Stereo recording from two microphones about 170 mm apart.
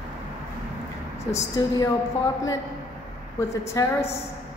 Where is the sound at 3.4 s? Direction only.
15° left (ahead or behind).